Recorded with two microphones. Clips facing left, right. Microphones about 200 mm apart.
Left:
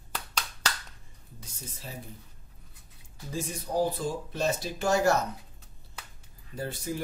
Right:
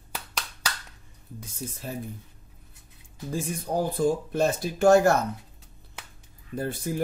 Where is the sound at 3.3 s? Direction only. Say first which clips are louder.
Right 3 dB; 50° right (ahead or behind).